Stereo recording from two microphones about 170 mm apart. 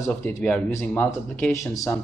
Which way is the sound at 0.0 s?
15° left (ahead or behind).